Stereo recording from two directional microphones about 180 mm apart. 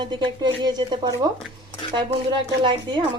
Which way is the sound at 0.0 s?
25° right (ahead or behind).